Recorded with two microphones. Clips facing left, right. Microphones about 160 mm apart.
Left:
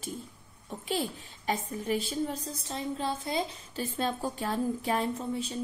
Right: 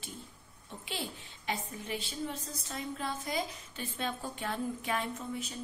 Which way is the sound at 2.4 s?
30° left (ahead or behind).